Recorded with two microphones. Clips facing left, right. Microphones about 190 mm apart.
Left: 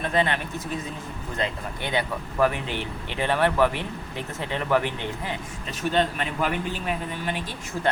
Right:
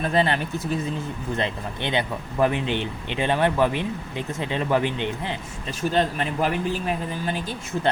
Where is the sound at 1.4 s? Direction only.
25° right (ahead or behind).